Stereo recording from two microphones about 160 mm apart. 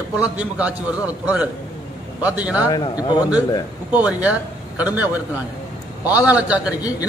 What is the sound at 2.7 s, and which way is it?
Speech, 25° left (ahead or behind).